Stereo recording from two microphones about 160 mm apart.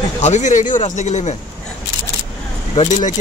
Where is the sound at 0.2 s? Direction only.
45° left (ahead or behind).